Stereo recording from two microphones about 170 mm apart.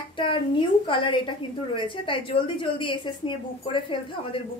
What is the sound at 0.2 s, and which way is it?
A woman's voice, 30° left (ahead or behind).